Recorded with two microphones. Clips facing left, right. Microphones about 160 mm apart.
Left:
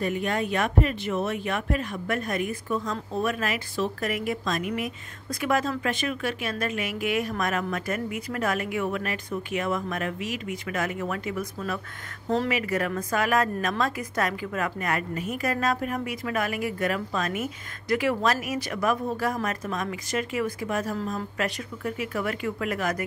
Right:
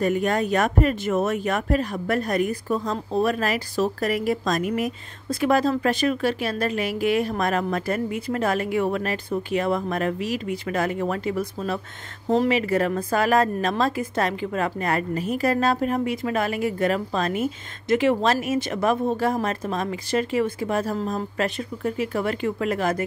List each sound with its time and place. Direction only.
0.0 s a woman's voice: 45° right (ahead or behind); by 23.0 s 30° right (ahead or behind)